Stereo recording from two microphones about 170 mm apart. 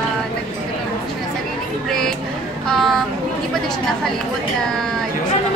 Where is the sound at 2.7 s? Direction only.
Centre (ahead or behind).